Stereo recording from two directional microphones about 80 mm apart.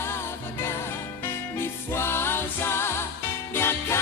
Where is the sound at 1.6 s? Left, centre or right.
Left.